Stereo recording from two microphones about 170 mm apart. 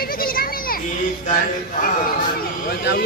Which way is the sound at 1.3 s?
55° left (ahead or behind).